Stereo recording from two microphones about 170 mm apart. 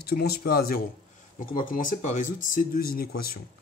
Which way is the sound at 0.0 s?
65° left (ahead or behind).